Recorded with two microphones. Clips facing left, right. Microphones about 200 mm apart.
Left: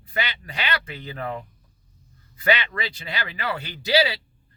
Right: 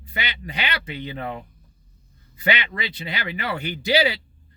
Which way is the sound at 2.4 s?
20° right (ahead or behind).